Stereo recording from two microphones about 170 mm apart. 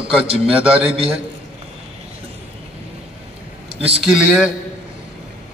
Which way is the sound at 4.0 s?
5° right (ahead or behind).